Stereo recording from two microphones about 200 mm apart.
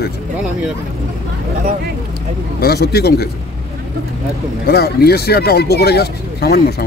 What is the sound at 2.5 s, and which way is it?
Speech, 50° left (ahead or behind).